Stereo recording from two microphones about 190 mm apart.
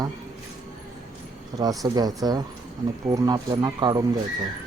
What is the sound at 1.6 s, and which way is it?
Speech, 20° right (ahead or behind).